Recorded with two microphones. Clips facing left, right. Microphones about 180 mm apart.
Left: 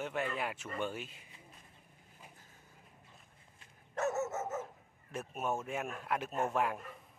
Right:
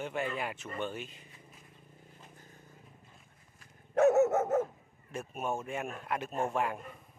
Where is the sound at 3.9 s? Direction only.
60° right (ahead or behind).